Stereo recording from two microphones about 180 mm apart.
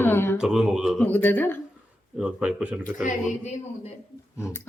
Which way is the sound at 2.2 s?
5° right (ahead or behind).